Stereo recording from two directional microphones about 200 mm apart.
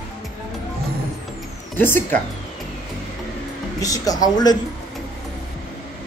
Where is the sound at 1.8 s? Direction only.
10° left (ahead or behind).